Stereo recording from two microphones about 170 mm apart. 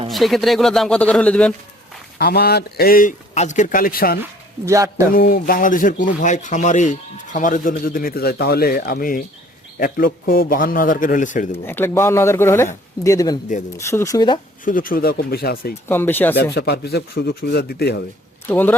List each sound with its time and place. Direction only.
0.1 s speech: centre (ahead or behind)
2.1 s a man's voice: 70° left (ahead or behind)
4.2 s speech: 15° right (ahead or behind)
5.1 s a man's voice: 60° left (ahead or behind)
11.6 s a man's voice: 10° left (ahead or behind)
14.6 s a man's voice: 55° left (ahead or behind)
15.9 s speech: 10° left (ahead or behind)
16.3 s speech: 70° left (ahead or behind)
18.4 s speech: 10° left (ahead or behind)